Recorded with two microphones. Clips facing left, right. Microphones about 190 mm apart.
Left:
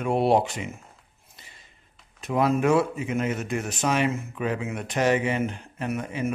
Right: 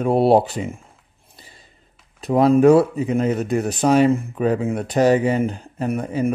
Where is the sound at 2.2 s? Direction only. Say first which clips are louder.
Right 8 dB; 35° right (ahead or behind).